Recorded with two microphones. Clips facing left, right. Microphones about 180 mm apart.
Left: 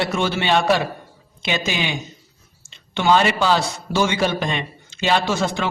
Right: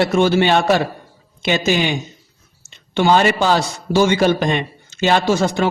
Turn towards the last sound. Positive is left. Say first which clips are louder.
# right 5 dB
turn(degrees=-40)  # may be behind; listen again after turning